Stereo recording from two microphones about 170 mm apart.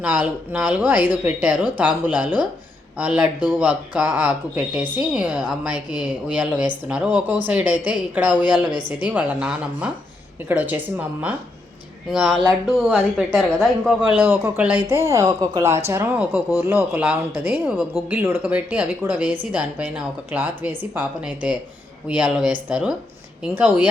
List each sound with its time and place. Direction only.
0.0 s speech: 5° right (ahead or behind)